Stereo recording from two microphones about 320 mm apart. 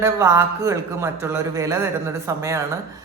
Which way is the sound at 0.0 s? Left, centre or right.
Centre.